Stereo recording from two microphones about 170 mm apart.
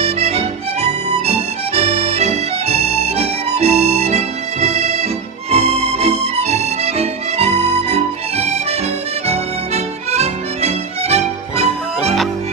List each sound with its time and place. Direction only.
0.0 s music: 40° right (ahead or behind)
10.1 s music: 40° right (ahead or behind)